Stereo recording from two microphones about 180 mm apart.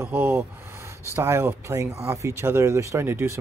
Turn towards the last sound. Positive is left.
turn(degrees=-15)  # may be behind; listen again after turning